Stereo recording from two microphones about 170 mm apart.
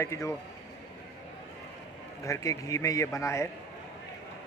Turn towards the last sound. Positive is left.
turn(degrees=15)  # may be behind; listen again after turning